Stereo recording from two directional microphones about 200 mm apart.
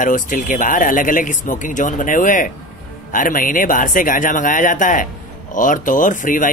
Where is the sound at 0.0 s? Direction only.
40° left (ahead or behind).